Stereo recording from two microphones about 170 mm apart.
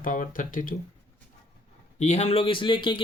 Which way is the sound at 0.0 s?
50° left (ahead or behind).